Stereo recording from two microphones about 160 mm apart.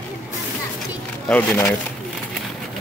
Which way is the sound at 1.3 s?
10° left (ahead or behind).